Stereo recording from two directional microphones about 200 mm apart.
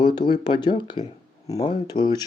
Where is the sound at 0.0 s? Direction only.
20° left (ahead or behind).